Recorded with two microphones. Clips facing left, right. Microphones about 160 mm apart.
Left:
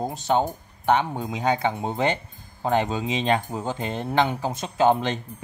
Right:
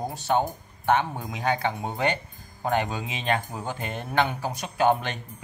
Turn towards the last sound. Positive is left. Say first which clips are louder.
# left 3 dB
turn(degrees=20)  # may be behind; listen again after turning